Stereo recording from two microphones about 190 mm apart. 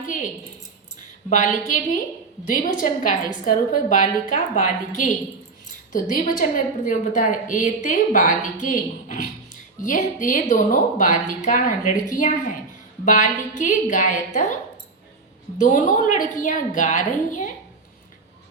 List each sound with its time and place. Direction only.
1.3 s a woman's voice: 40° left (ahead or behind)
15.5 s a woman's voice: 40° left (ahead or behind)